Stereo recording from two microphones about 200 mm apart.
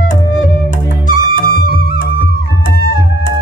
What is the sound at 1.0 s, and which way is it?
Music, 45° left (ahead or behind).